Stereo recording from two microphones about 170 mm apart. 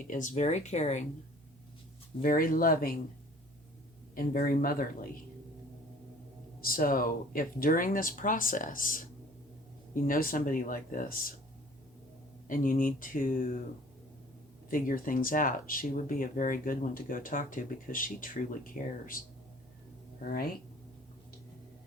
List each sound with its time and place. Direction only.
0.0 s speech: 50° left (ahead or behind)
2.2 s speech: 55° left (ahead or behind)
4.1 s speech: 60° left (ahead or behind)
6.6 s speech: 60° left (ahead or behind)
12.5 s speech: 55° left (ahead or behind)
14.7 s speech: 55° left (ahead or behind)